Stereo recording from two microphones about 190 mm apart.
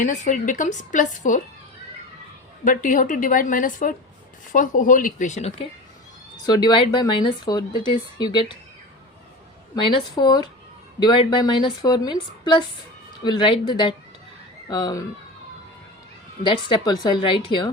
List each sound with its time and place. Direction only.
0.0 s a woman's voice: 40° left (ahead or behind)
2.6 s a woman's voice: 45° left (ahead or behind)
6.4 s a woman's voice: 20° left (ahead or behind)
9.7 s a woman's voice: 25° left (ahead or behind)
16.4 s a woman's voice: 25° left (ahead or behind)